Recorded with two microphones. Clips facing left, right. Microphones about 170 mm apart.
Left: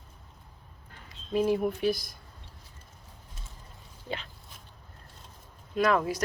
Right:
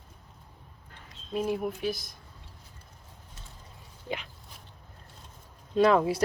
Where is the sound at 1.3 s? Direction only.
Centre (ahead or behind).